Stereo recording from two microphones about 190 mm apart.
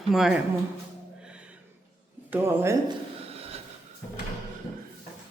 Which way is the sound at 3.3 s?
30° right (ahead or behind).